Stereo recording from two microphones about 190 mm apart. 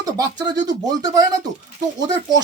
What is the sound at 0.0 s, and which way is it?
Speech, 20° right (ahead or behind).